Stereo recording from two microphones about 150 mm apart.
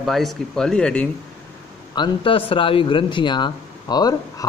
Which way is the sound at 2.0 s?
35° left (ahead or behind).